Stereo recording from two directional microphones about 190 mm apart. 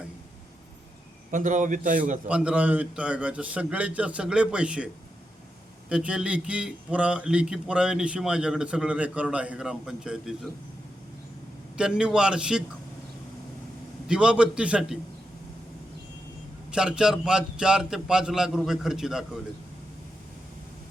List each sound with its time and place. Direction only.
1.3 s a man's voice: 45° right (ahead or behind)
2.2 s a man's voice: 5° right (ahead or behind)
5.9 s a man's voice: 5° right (ahead or behind)
11.8 s a man's voice: 5° right (ahead or behind)
14.1 s a man's voice: 5° right (ahead or behind)
16.7 s a man's voice: 5° right (ahead or behind)